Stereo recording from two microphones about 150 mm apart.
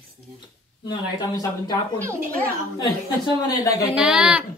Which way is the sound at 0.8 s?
25° left (ahead or behind).